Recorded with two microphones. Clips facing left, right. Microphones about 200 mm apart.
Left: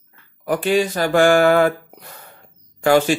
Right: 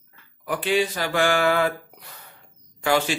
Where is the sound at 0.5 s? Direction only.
45° left (ahead or behind).